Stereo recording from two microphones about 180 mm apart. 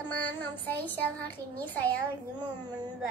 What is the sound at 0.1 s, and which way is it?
Child singing, 10° left (ahead or behind).